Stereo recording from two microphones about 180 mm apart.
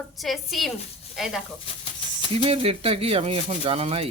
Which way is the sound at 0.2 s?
Centre (ahead or behind).